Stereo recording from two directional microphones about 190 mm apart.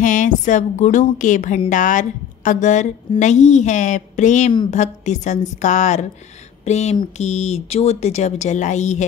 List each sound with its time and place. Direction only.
0.0 s speech: 40° left (ahead or behind)